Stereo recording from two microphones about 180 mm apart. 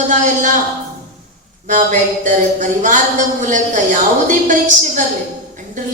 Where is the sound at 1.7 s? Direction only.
45° right (ahead or behind).